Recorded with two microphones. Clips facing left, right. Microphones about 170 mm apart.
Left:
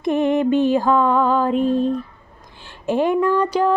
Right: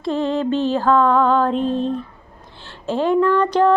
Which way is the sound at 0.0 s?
20° left (ahead or behind).